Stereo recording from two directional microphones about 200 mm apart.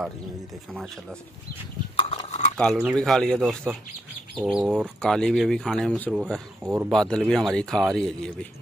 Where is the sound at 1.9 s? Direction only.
30° left (ahead or behind).